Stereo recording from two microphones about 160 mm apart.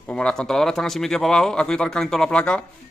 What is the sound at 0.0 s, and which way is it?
Speech, 5° left (ahead or behind).